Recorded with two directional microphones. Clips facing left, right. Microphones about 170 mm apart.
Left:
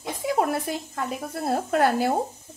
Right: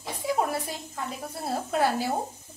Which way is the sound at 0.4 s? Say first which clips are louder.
Left 4 dB; 55° left (ahead or behind).